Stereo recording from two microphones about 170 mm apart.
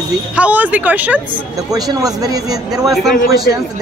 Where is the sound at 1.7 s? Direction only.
20° right (ahead or behind).